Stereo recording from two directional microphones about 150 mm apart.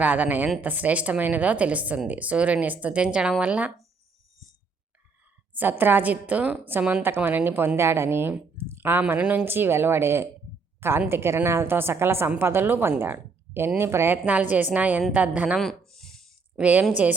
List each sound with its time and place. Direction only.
0.0 s a woman's voice: 10° right (ahead or behind)
5.5 s a woman's voice: 10° right (ahead or behind)
10.8 s a sound: 15° right (ahead or behind)
11.0 s a woman's voice: 15° right (ahead or behind)
15.9 s a sound: centre (ahead or behind)
16.6 s a woman's voice: 10° right (ahead or behind)